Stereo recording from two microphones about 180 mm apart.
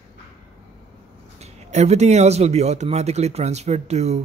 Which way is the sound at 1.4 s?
35° right (ahead or behind).